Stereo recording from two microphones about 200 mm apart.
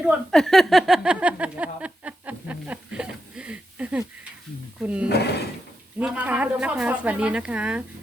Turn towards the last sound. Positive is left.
turn(degrees=-5)  # may be behind; listen again after turning